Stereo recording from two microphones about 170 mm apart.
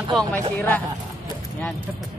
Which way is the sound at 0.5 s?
10° left (ahead or behind).